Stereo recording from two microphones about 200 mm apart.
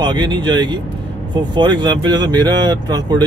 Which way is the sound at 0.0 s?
20° right (ahead or behind).